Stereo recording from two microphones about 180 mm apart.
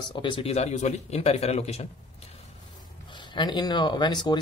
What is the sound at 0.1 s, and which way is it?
Speech, 25° left (ahead or behind).